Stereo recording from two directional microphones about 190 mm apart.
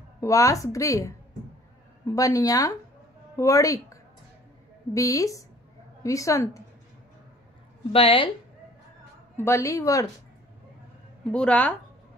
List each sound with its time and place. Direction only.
0.2 s speech: 15° left (ahead or behind)
7.9 s a woman's voice: 30° left (ahead or behind)
9.4 s speech: 15° left (ahead or behind)
11.3 s speech: 5° left (ahead or behind)